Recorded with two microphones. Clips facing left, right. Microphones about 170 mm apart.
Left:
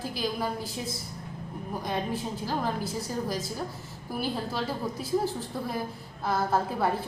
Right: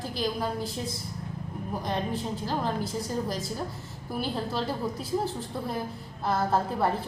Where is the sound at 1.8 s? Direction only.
5° left (ahead or behind).